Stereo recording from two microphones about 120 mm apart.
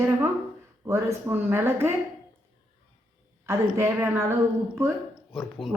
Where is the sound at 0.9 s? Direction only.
25° right (ahead or behind).